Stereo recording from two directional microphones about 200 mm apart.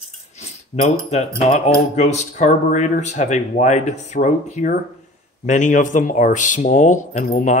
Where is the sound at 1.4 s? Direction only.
35° left (ahead or behind).